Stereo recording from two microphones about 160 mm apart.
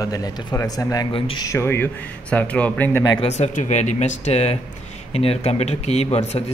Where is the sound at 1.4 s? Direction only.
15° left (ahead or behind).